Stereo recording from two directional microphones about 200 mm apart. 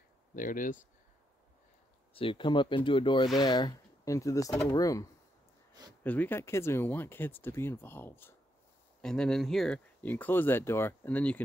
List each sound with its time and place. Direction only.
0.4 s speech: 40° left (ahead or behind)
2.1 s speech: 25° left (ahead or behind)
6.0 s speech: 10° left (ahead or behind)